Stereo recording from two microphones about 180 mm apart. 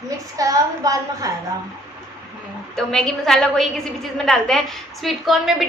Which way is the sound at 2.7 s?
Centre (ahead or behind).